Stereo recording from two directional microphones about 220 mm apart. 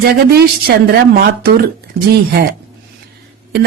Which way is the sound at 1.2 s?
45° right (ahead or behind).